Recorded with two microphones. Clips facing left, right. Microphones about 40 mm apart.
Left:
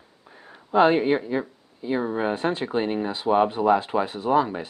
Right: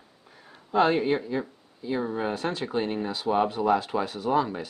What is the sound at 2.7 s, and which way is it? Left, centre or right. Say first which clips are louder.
Speech: left 3 dB; centre.